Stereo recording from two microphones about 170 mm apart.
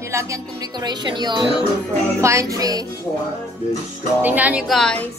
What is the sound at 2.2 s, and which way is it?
Music, 15° right (ahead or behind).